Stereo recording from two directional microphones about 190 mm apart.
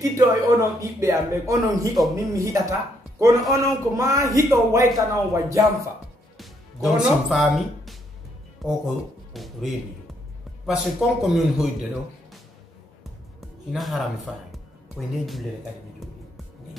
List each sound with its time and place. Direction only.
0.0 s a sound: 20° right (ahead or behind)
0.6 s a man's voice: 15° right (ahead or behind)
6.3 s speech: centre (ahead or behind)
10.7 s a man's voice: centre (ahead or behind)
13.4 s speech: centre (ahead or behind)